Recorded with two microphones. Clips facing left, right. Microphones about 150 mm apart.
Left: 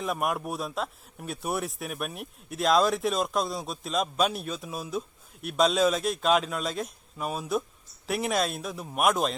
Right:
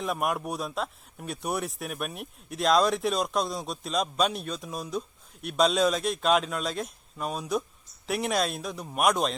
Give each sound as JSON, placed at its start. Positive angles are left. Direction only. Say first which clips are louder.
{"t": 0.0, "sound": "a man's voice", "louder": "even", "side_deg": 0}